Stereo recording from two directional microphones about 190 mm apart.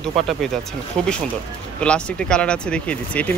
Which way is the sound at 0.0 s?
Centre (ahead or behind).